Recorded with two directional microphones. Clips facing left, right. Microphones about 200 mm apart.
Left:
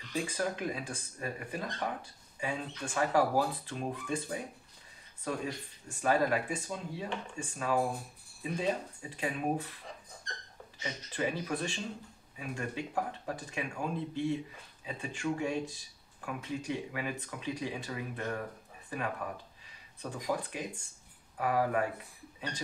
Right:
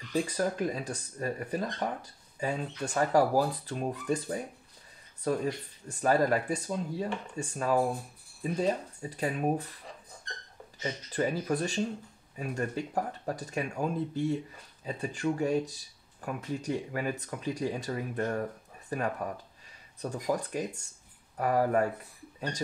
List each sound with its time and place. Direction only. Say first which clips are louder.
0.1 s speech: right 4 dB; 40° right (ahead or behind)
10.8 s speech: right 4 dB; 45° right (ahead or behind)